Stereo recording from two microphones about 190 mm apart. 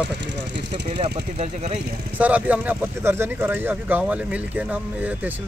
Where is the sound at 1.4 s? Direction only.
35° right (ahead or behind).